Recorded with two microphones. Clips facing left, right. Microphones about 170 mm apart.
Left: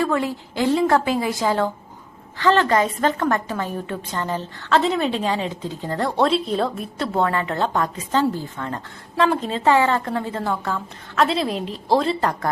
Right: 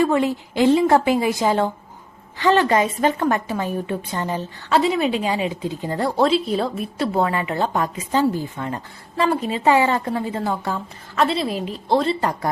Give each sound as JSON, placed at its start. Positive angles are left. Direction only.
{"t": 0.0, "sound": "a woman's voice", "side_deg": -20}
{"t": 11.2, "sound": "a woman's voice", "side_deg": 0}